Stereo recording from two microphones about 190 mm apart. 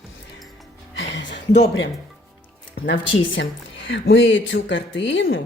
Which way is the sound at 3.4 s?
65° left (ahead or behind).